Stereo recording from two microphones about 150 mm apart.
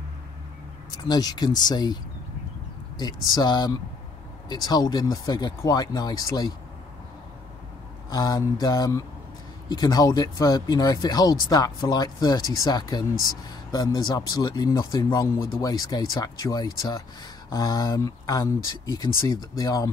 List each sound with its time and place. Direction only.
0.9 s speech: 25° left (ahead or behind)
3.0 s speech: 25° left (ahead or behind)
8.1 s speech: 25° left (ahead or behind)